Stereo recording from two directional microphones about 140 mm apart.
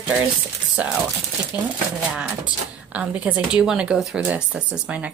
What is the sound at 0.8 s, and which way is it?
Speech, 10° right (ahead or behind).